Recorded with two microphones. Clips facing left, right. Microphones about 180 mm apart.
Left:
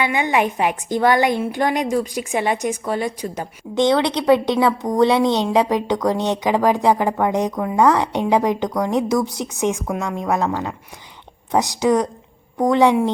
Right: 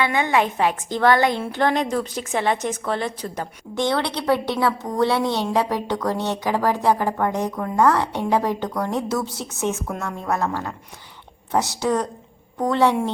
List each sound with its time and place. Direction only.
0.0 s a woman's voice: 15° left (ahead or behind)